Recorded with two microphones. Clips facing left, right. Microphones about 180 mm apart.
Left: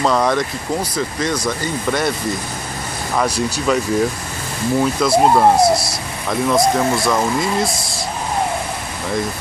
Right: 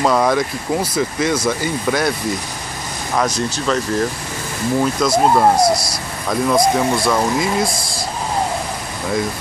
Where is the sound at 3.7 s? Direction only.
10° left (ahead or behind).